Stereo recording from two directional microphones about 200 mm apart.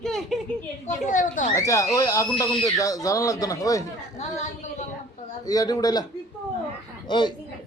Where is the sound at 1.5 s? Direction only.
15° left (ahead or behind).